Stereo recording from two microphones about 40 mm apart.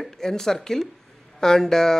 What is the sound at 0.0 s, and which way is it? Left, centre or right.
Speech, centre.